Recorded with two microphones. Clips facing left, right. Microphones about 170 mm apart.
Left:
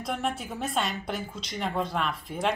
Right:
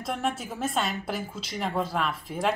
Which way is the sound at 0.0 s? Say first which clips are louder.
Right 1 dB; centre (ahead or behind).